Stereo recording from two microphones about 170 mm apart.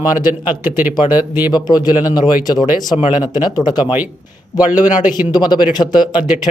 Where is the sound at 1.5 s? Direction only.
25° left (ahead or behind).